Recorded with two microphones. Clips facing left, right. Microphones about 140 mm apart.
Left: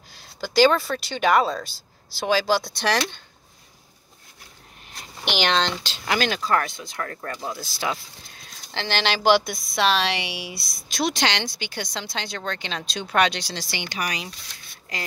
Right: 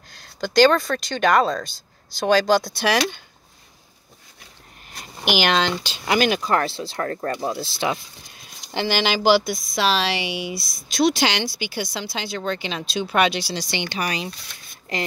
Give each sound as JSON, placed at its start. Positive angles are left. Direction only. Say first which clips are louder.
{"t": 0.1, "sound": "speech", "louder": "right 3 dB", "side_deg": 5}
{"t": 5.2, "sound": "speech", "louder": "right 3 dB", "side_deg": -5}
{"t": 6.6, "sound": "speech", "louder": "right 6 dB", "side_deg": -30}
{"t": 7.3, "sound": "speech", "louder": "right 6 dB", "side_deg": -25}
{"t": 8.7, "sound": "a woman's voice", "louder": "right 3 dB", "side_deg": -10}
{"t": 13.7, "sound": "speech", "louder": "right 1 dB", "side_deg": -25}